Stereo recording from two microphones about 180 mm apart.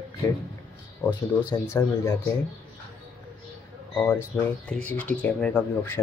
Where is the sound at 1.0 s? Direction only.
10° left (ahead or behind).